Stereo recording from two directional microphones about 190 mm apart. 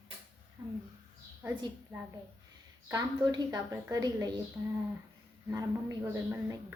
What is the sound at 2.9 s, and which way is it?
A woman's voice, 20° right (ahead or behind).